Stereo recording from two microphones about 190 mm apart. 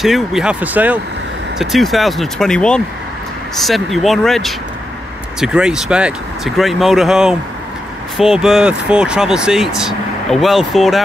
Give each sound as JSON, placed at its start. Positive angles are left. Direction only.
{"t": 0.0, "sound": "speech", "side_deg": 0}